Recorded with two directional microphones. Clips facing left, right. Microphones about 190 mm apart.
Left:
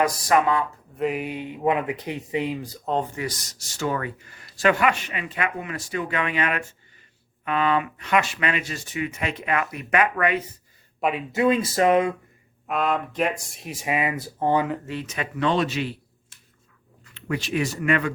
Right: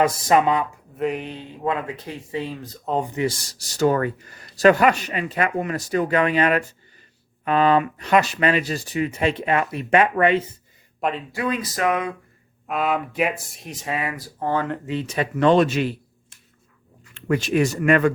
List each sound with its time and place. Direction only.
0.0 s speech: 20° right (ahead or behind)
0.9 s speech: centre (ahead or behind)
3.0 s speech: 25° right (ahead or behind)
11.3 s a sound: 25° left (ahead or behind)
12.6 s speech: 5° right (ahead or behind)
13.8 s speech: 15° left (ahead or behind)
14.8 s speech: 25° right (ahead or behind)
15.4 s speech: 45° right (ahead or behind)
17.2 s speech: 45° right (ahead or behind)